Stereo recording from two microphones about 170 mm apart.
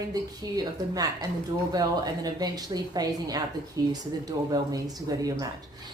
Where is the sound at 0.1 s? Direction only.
20° right (ahead or behind).